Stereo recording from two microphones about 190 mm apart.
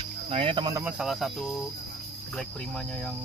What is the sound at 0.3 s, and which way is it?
Cricket, 30° right (ahead or behind).